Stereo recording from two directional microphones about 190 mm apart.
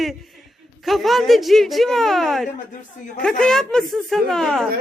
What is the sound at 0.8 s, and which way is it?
Speech, centre (ahead or behind).